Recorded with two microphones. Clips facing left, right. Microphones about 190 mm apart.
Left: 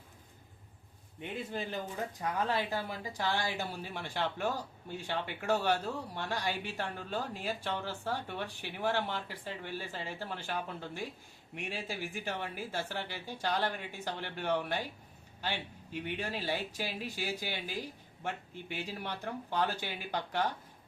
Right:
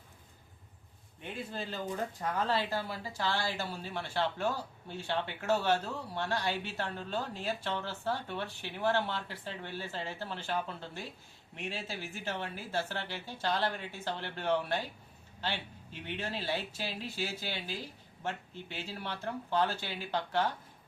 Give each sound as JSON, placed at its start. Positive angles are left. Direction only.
{"t": 1.2, "sound": "speech", "side_deg": 15}